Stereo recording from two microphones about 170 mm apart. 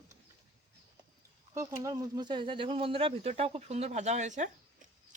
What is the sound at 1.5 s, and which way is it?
Speech, 20° right (ahead or behind).